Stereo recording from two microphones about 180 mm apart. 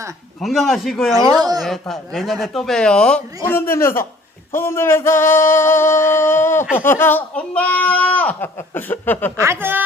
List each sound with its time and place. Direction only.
0.4 s speech: centre (ahead or behind)
1.3 s speech: 20° right (ahead or behind)
1.6 s speech: centre (ahead or behind)
9.4 s speech: 15° right (ahead or behind)